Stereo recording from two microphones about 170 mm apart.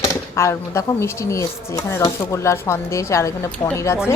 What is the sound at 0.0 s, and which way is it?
A woman's voice, 15° left (ahead or behind).